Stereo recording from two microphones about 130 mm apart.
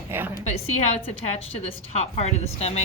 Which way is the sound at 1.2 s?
50° left (ahead or behind).